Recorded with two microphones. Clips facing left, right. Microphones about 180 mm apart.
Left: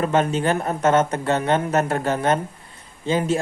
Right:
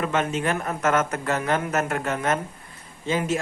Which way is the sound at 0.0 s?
35° left (ahead or behind).